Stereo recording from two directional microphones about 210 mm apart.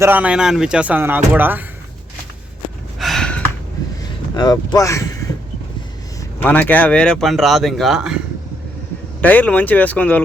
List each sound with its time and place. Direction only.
0.0 s speech: 10° right (ahead or behind)
3.0 s gasp: centre (ahead or behind)
4.4 s speech: 20° left (ahead or behind)
6.4 s speech: 10° left (ahead or behind)
9.2 s speech: 5° left (ahead or behind)